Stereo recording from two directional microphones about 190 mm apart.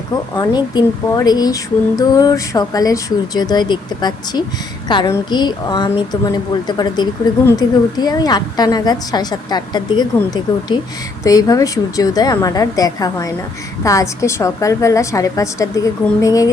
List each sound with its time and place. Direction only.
0.3 s a woman's voice: 20° left (ahead or behind)